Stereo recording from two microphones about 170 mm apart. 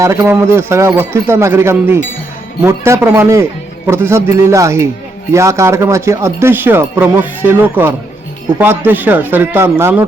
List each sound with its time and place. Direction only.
0.0 s speech: 15° right (ahead or behind)